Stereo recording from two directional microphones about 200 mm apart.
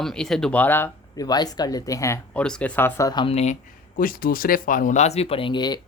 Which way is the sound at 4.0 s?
45° left (ahead or behind).